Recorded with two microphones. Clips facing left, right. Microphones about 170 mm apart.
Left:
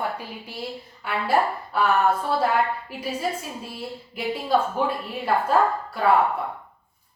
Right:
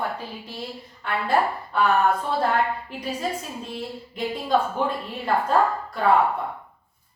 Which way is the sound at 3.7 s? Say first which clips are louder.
Right 2 dB; 5° left (ahead or behind).